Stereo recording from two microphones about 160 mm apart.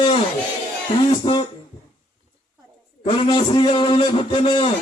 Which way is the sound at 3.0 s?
35° left (ahead or behind).